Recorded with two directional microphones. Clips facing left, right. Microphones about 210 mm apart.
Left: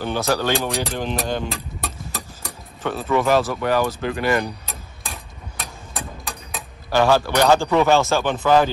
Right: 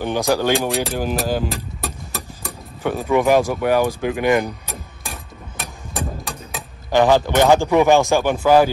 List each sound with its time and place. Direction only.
0.0 s a man's voice: 15° right (ahead or behind)
0.8 s music: 5° right (ahead or behind)
2.8 s a man's voice: 15° right (ahead or behind)
4.6 s a sound: centre (ahead or behind)
5.9 s vehicle: centre (ahead or behind)
6.9 s a man's voice: 15° right (ahead or behind)